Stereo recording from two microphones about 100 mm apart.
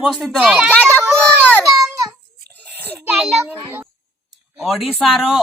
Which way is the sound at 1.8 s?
35° right (ahead or behind).